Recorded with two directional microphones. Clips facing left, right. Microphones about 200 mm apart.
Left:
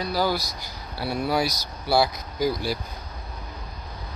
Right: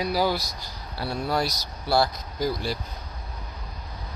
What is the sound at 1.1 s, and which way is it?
Speech, 5° left (ahead or behind).